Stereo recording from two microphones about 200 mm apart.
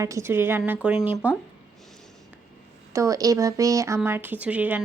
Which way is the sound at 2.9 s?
15° right (ahead or behind).